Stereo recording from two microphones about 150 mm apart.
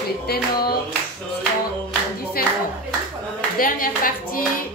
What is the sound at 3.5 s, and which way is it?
Speech, 70° left (ahead or behind).